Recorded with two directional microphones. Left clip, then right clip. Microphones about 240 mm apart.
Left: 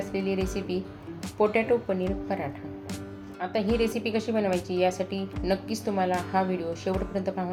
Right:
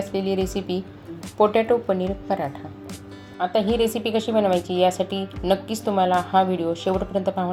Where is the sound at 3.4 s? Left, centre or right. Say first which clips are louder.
Right 6 dB; right.